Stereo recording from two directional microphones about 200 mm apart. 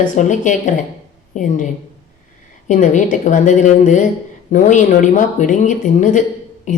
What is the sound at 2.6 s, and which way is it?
Speech, 40° left (ahead or behind).